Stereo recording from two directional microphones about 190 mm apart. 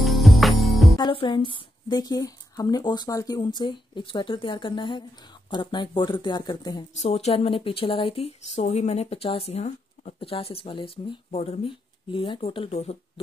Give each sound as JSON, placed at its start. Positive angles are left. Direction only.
{"t": 0.0, "sound": "music", "side_deg": 0}
{"t": 0.9, "sound": "a woman's voice", "side_deg": 25}
{"t": 7.0, "sound": "speech", "side_deg": 35}